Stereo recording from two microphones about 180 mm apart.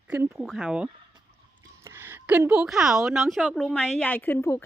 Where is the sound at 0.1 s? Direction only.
5° right (ahead or behind).